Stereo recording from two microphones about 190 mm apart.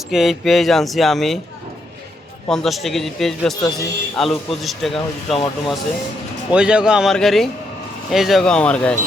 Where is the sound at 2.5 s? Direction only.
Centre (ahead or behind).